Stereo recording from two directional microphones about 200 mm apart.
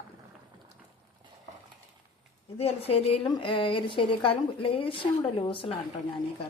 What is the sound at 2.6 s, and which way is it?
A woman's voice, 30° left (ahead or behind).